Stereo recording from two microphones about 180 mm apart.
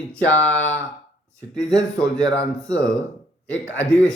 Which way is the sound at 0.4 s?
5° left (ahead or behind).